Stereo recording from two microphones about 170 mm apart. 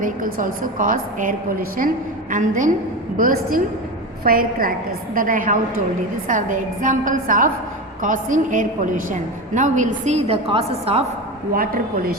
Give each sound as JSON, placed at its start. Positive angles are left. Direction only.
{"t": 0.0, "sound": "a woman's voice", "side_deg": -55}
{"t": 11.5, "sound": "a woman's voice", "side_deg": -60}